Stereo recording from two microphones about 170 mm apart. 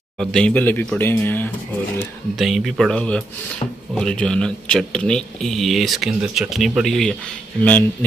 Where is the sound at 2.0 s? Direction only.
Centre (ahead or behind).